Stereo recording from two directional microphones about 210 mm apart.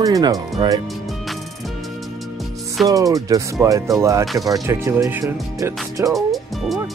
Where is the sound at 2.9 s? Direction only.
15° right (ahead or behind).